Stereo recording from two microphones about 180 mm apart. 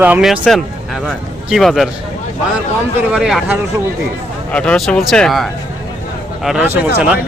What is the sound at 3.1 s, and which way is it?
Speech, 5° right (ahead or behind).